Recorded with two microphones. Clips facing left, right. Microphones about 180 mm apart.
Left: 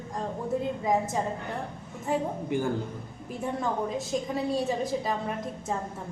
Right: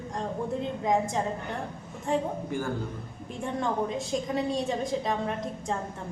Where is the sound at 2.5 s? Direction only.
20° left (ahead or behind).